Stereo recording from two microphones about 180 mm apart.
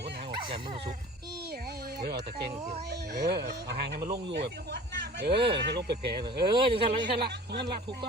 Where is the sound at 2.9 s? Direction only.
65° right (ahead or behind).